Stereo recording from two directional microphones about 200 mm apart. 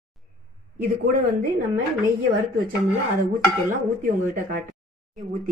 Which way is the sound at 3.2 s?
40° right (ahead or behind).